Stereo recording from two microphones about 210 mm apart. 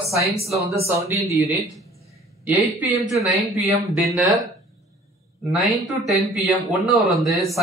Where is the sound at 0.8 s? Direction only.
10° right (ahead or behind).